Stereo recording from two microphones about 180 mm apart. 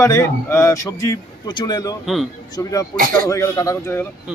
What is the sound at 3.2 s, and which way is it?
Speech, 15° left (ahead or behind).